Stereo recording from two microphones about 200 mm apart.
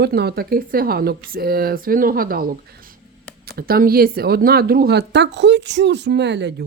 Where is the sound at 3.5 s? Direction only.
45° right (ahead or behind).